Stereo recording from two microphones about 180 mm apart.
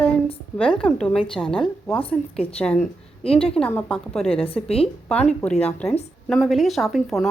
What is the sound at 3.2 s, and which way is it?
Speech, 30° left (ahead or behind).